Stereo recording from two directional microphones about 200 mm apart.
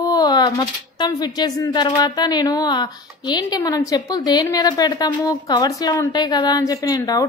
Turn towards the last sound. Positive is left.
turn(degrees=20)  # may be behind; listen again after turning